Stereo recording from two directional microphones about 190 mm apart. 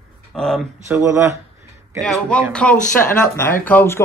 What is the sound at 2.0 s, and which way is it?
Speech, 5° left (ahead or behind).